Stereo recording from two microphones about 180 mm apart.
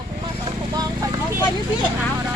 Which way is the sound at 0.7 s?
20° right (ahead or behind).